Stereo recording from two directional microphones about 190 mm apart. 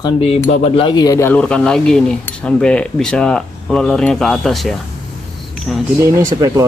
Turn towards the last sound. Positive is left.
turn(degrees=-15)  # may be behind; listen again after turning